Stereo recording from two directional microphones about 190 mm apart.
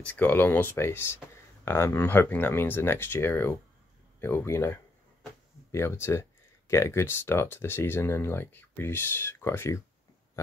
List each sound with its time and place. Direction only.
0.0 s speech: 10° left (ahead or behind)